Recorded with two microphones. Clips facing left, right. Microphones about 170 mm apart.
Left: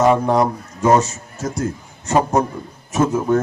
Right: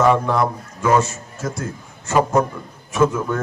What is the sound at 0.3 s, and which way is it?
A man's voice, 40° left (ahead or behind).